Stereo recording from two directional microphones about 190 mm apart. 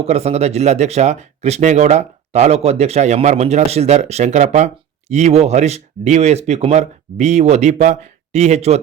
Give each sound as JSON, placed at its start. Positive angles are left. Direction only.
{"t": 0.0, "sound": "speech", "side_deg": -35}